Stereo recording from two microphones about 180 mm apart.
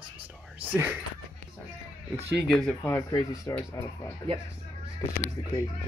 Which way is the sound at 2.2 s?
70° right (ahead or behind).